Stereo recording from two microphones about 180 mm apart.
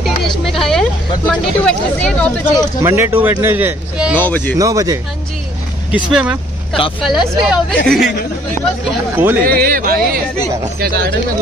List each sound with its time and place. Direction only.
0.0 s vehicle: centre (ahead or behind)
2.8 s a man's voice: 15° right (ahead or behind)
4.2 s speech: 10° left (ahead or behind)
4.6 s speech: 20° right (ahead or behind)
5.9 s speech: 5° right (ahead or behind)
9.1 s a man's voice: 10° right (ahead or behind)
9.6 s speech: 55° right (ahead or behind)